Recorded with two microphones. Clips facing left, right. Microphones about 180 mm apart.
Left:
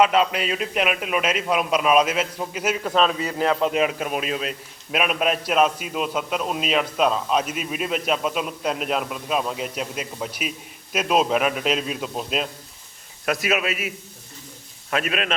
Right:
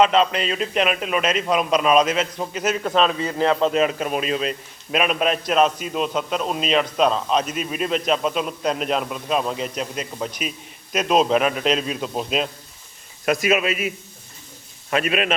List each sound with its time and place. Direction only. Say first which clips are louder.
0.0 s a man's voice: right 1 dB; 10° left (ahead or behind)
3.2 s speech: right 2 dB; 25° right (ahead or behind)
3.6 s a man's voice: right 2 dB; 10° left (ahead or behind)